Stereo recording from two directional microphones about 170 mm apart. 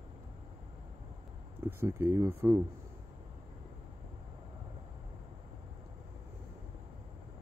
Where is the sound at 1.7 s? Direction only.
15° right (ahead or behind).